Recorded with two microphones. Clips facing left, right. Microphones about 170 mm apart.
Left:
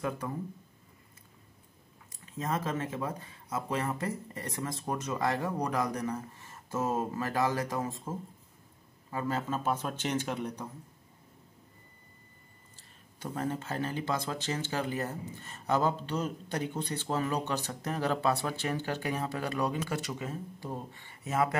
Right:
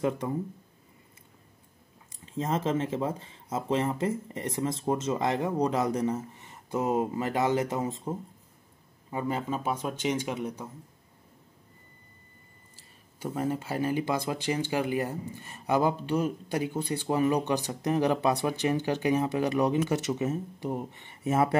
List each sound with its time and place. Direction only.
2.2 s speech: 25° right (ahead or behind); by 10.7 s 10° right (ahead or behind)
12.7 s speech: 10° right (ahead or behind); by 21.5 s 25° right (ahead or behind)